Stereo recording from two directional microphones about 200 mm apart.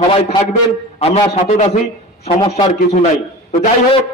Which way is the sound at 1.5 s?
35° left (ahead or behind).